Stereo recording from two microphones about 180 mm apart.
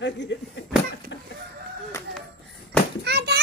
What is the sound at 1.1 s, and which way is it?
Chicken, 80° left.